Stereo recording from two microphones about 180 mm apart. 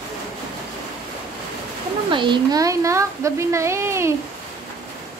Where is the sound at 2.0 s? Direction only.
25° right (ahead or behind).